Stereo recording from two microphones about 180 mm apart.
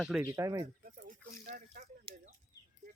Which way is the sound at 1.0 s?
45° right (ahead or behind).